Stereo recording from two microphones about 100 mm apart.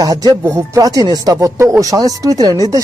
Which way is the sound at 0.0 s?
40° right (ahead or behind).